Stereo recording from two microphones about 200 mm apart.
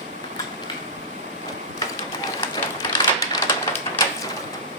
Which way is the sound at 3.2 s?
15° left (ahead or behind).